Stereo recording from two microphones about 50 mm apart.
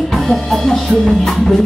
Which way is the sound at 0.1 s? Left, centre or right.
Centre.